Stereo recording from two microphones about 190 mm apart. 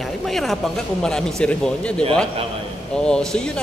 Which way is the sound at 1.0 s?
5° left (ahead or behind).